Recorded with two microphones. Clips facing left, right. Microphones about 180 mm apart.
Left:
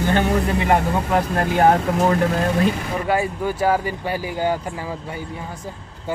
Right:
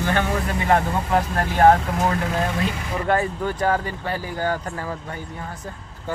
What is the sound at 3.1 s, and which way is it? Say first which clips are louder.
Speech: even; 10° left (ahead or behind).